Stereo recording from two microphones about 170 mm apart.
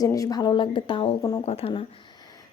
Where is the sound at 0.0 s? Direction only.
20° left (ahead or behind).